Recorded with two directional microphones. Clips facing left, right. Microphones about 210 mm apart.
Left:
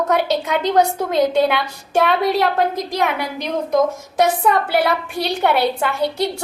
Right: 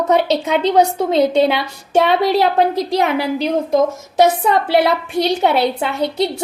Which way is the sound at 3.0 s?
30° right (ahead or behind).